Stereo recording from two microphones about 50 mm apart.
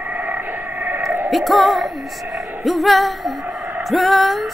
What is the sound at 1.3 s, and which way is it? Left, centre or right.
Music, centre.